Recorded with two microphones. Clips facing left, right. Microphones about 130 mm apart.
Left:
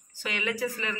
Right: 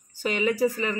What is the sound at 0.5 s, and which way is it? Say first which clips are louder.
Speech: right 7 dB; 50° right (ahead or behind).